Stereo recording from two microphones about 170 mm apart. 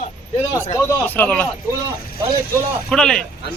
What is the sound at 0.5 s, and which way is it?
Speech, 15° left (ahead or behind).